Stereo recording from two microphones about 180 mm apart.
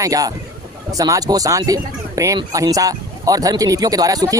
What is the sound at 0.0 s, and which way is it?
Speech, 20° right (ahead or behind).